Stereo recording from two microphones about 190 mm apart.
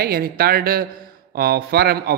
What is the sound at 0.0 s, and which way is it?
A man's voice, 50° right (ahead or behind).